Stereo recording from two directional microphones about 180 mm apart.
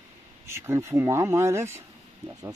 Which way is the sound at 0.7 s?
15° right (ahead or behind).